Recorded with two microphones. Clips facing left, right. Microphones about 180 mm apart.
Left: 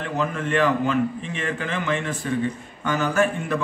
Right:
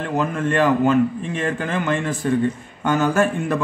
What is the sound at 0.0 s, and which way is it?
A man's voice, 50° right (ahead or behind).